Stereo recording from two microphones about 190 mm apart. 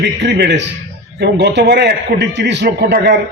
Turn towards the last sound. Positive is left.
turn(degrees=-55)  # may be behind; listen again after turning